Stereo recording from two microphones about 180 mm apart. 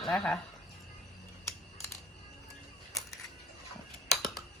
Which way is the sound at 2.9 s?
Centre (ahead or behind).